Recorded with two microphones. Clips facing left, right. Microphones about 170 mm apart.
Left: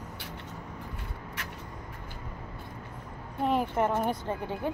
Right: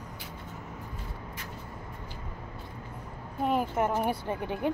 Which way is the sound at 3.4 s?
Centre (ahead or behind).